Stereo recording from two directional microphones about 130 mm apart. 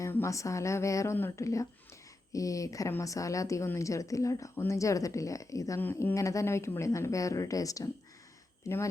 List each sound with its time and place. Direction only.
0.0 s speech: 20° left (ahead or behind)